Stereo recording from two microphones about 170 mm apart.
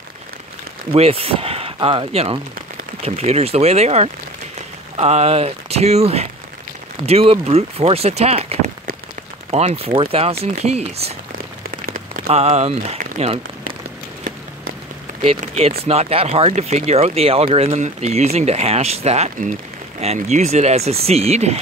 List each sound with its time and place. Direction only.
0.9 s speech: 35° right (ahead or behind)
11.7 s rain on surface: 55° right (ahead or behind)
12.3 s speech: 40° right (ahead or behind)
15.2 s speech: 35° right (ahead or behind)